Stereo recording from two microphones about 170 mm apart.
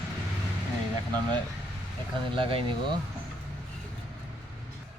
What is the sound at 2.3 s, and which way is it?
Speech, 30° right (ahead or behind).